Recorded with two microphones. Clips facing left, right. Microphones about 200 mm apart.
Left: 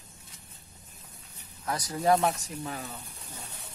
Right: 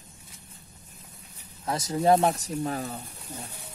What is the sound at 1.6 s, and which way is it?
Speech, 25° right (ahead or behind).